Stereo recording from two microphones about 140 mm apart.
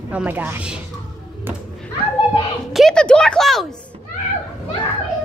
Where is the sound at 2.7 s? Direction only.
Centre (ahead or behind).